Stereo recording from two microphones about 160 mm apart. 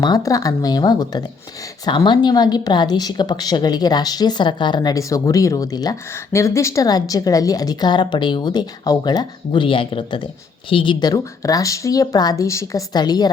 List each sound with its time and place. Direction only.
0.0 s speech: 25° left (ahead or behind)